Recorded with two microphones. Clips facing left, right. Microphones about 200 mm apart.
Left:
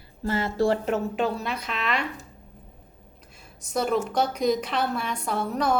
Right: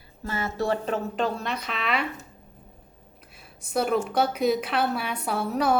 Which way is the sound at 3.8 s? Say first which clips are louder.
Right 1 dB; 5° right (ahead or behind).